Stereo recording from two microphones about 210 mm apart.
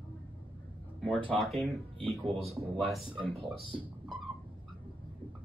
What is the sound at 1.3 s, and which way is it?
Speech, centre (ahead or behind).